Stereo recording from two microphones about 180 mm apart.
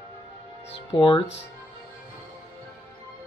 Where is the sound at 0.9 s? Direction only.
25° left (ahead or behind).